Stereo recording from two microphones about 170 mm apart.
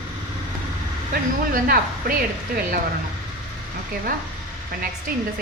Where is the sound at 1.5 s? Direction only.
55° right (ahead or behind).